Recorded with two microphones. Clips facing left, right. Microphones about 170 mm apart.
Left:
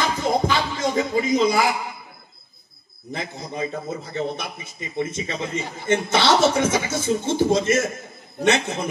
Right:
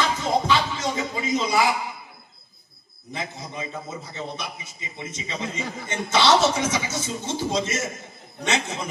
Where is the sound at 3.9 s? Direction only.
55° left (ahead or behind).